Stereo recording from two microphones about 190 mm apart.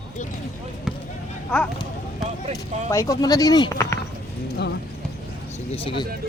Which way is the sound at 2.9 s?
15° left (ahead or behind).